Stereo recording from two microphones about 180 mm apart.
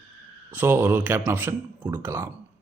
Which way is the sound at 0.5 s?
10° right (ahead or behind).